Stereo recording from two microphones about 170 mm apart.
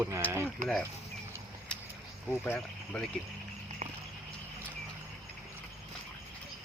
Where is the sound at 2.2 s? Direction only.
10° left (ahead or behind).